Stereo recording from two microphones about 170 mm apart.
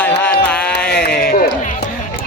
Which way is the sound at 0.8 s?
5° left (ahead or behind).